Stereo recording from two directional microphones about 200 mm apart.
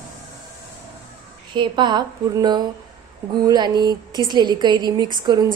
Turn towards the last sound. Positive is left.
turn(degrees=-20)  # may be behind; listen again after turning